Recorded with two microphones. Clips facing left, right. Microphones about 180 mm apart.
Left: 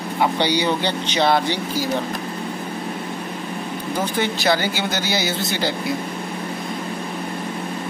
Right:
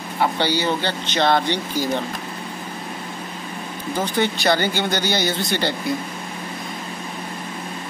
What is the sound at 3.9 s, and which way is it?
Speech, centre (ahead or behind).